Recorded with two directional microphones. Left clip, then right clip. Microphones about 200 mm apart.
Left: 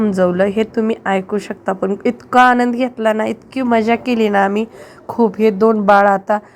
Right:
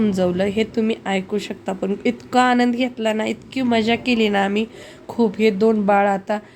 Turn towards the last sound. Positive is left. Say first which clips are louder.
# left 6 dB
turn(degrees=15)  # may be behind; listen again after turning